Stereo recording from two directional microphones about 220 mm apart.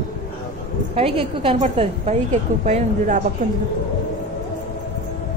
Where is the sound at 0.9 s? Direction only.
25° right (ahead or behind).